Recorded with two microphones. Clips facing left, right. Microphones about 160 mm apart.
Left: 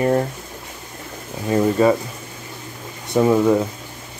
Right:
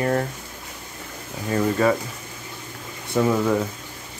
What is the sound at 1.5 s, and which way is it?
Speech, 20° left (ahead or behind).